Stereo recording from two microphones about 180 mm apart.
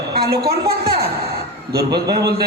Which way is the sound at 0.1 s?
60° right (ahead or behind).